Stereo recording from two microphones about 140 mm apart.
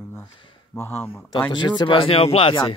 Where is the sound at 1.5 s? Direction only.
30° left (ahead or behind).